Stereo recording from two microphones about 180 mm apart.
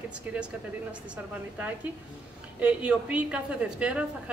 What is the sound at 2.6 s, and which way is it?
A woman's voice, 5° right (ahead or behind).